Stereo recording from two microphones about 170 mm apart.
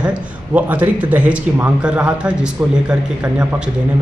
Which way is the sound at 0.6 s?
10° right (ahead or behind).